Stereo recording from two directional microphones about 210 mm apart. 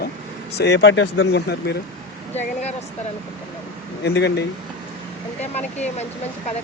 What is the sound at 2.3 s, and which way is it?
Speech, 30° left (ahead or behind).